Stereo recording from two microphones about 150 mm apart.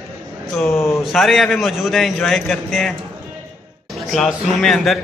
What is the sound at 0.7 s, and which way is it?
Speech, 20° left (ahead or behind).